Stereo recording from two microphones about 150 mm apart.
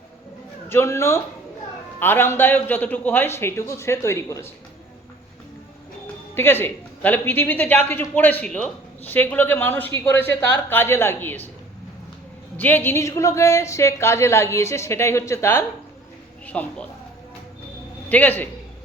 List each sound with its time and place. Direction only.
0.7 s a man's voice: 15° left (ahead or behind)
6.3 s a man's voice: 15° left (ahead or behind)
12.5 s a woman's voice: 10° left (ahead or behind)
18.1 s a man's voice: 10° left (ahead or behind)